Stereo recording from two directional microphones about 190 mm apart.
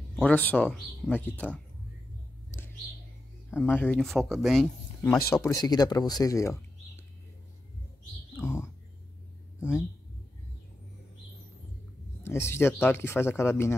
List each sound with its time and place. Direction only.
0.1 s speech: 5° left (ahead or behind)
3.6 s speech: 10° left (ahead or behind)
5.6 s speech: 20° left (ahead or behind)
9.6 s speech: 5° right (ahead or behind)
12.2 s speech: 15° left (ahead or behind)